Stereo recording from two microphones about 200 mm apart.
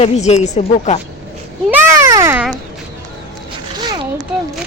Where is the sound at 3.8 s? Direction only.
20° right (ahead or behind).